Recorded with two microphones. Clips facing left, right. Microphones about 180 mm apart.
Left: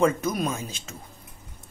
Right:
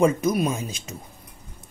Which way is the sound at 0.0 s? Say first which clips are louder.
Right 3 dB; 10° right (ahead or behind).